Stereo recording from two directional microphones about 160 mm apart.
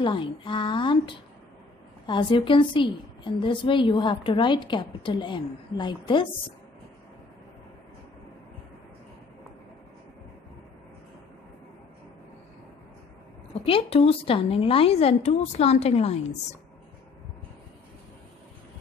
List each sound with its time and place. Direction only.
0.0 s a woman's voice: 30° left (ahead or behind)
13.5 s a woman's voice: 35° left (ahead or behind)